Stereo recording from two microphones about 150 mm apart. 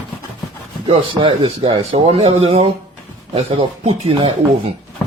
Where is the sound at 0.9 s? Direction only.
35° right (ahead or behind).